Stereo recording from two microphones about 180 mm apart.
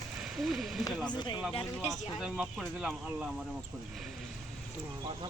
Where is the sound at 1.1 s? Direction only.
25° left (ahead or behind).